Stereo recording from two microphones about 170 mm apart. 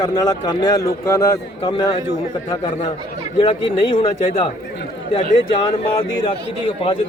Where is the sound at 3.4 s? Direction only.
30° left (ahead or behind).